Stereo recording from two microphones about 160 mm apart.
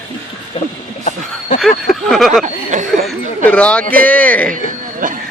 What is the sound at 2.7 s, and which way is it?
Speech, 50° right (ahead or behind).